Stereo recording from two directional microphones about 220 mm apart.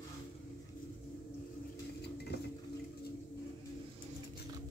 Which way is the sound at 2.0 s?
50° left (ahead or behind).